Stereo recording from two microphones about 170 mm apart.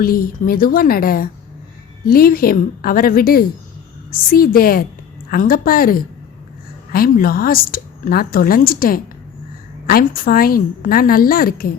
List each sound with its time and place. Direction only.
0.0 s a woman's voice: 60° left (ahead or behind)